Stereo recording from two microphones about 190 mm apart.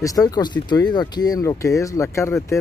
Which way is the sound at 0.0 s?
20° left (ahead or behind).